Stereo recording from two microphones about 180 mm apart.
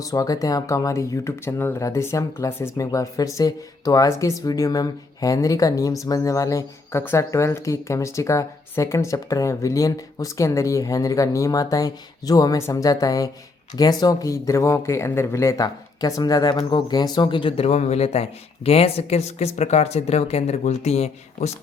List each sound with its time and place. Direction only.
0.0 s speech: 20° left (ahead or behind); by 21.5 s 35° left (ahead or behind)